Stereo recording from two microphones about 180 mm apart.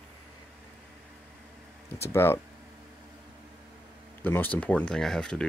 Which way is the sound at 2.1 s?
15° left (ahead or behind).